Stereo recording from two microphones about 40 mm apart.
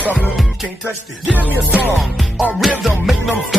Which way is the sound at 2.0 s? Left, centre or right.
Centre.